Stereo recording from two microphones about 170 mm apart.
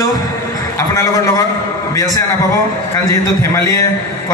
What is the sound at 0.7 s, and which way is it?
Speech, 20° left (ahead or behind).